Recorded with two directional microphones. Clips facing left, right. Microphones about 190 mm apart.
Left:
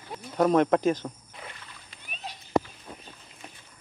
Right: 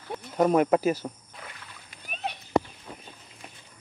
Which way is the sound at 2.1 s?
65° right (ahead or behind).